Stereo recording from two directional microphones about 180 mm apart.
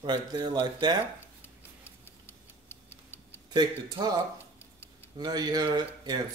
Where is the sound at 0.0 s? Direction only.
25° right (ahead or behind).